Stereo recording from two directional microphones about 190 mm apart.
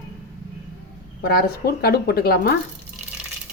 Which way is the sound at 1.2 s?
50° left (ahead or behind).